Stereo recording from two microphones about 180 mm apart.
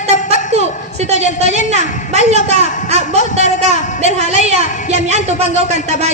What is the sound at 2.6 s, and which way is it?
Speech, 45° left (ahead or behind).